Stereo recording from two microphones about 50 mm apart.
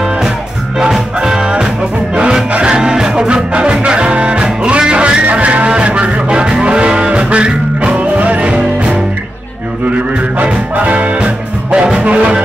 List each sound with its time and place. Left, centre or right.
0.9 s music: centre
9.8 s music: right
11.7 s music: centre